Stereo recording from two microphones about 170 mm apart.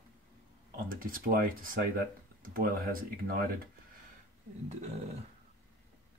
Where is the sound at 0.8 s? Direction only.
55° right (ahead or behind).